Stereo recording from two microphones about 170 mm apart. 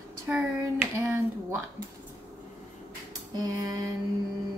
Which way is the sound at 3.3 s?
20° right (ahead or behind).